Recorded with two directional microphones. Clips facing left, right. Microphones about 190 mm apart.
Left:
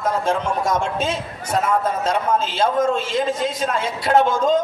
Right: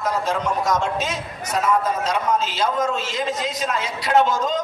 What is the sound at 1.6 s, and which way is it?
A man's voice, 55° left (ahead or behind).